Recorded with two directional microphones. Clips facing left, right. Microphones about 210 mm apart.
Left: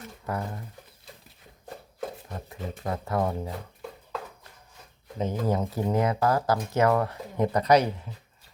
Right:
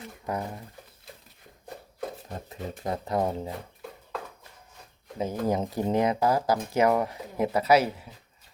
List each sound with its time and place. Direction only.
0.3 s speech: 15° right (ahead or behind)
2.3 s speech: 20° right (ahead or behind)
5.1 s speech: 10° right (ahead or behind)
5.5 s speech: 20° right (ahead or behind)